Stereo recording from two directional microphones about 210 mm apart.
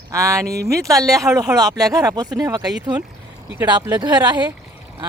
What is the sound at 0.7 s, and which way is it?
Speech, 15° right (ahead or behind).